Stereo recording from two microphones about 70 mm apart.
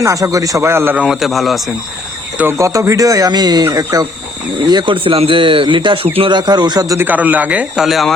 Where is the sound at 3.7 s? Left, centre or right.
Right.